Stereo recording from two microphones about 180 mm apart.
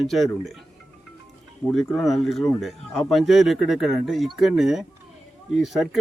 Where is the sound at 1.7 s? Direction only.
Centre (ahead or behind).